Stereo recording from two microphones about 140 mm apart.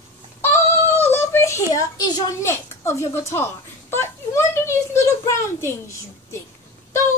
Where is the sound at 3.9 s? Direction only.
20° left (ahead or behind).